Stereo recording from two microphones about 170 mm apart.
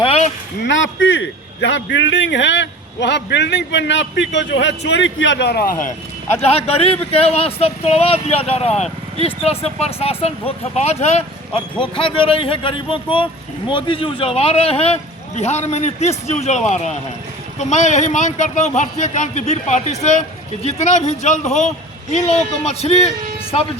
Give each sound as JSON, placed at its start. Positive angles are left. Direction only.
{"t": 0.0, "sound": "a sound", "side_deg": 35}
{"t": 0.6, "sound": "a man's voice", "side_deg": 90}
{"t": 6.3, "sound": "a man's voice", "side_deg": 40}